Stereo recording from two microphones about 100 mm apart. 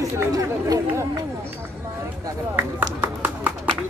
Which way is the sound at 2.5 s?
20° right (ahead or behind).